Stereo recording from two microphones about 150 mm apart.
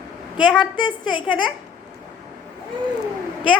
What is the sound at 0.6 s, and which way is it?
Speech, 30° left (ahead or behind).